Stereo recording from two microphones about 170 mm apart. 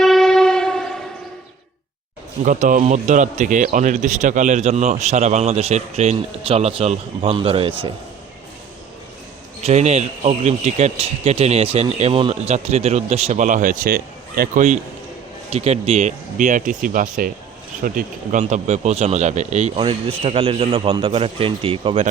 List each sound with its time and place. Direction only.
0.0 s train: centre (ahead or behind)
2.4 s a man's voice: 50° right (ahead or behind); by 7.7 s 30° right (ahead or behind)
9.6 s a man's voice: 40° right (ahead or behind)